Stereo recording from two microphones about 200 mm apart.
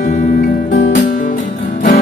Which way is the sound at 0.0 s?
40° left (ahead or behind).